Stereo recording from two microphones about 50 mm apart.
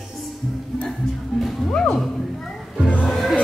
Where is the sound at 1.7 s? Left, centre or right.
Left.